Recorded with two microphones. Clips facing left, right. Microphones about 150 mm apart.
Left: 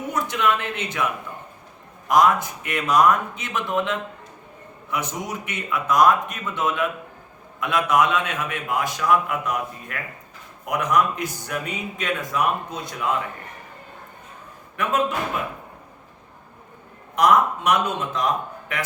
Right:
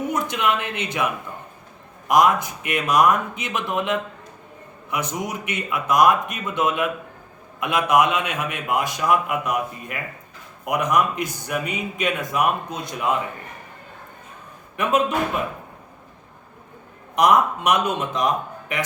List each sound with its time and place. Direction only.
0.1 s speech: 15° right (ahead or behind)
2.0 s speech: 15° right (ahead or behind)
17.2 s speech: 15° right (ahead or behind)